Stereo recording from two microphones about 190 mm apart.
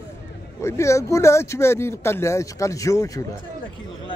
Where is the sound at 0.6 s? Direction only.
15° left (ahead or behind).